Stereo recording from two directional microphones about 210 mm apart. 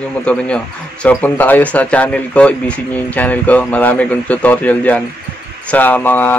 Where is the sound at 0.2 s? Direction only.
5° left (ahead or behind).